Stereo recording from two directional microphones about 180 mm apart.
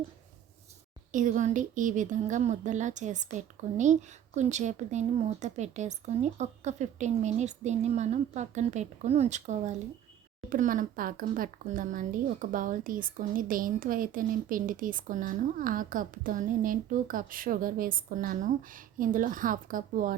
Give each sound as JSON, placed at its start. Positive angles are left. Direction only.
{"t": 1.1, "sound": "a woman's voice", "side_deg": -45}